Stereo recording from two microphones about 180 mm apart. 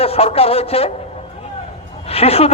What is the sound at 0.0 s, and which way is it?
Speech, 35° left (ahead or behind).